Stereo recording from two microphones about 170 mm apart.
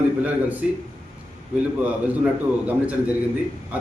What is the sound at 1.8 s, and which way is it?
A man's voice, 10° right (ahead or behind).